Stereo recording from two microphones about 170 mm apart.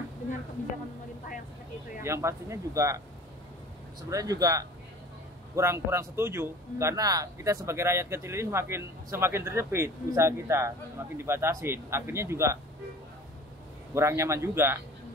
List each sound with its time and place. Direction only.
2.0 s speech: 15° right (ahead or behind)
4.1 s speech: 20° right (ahead or behind)
13.9 s speech: 15° right (ahead or behind)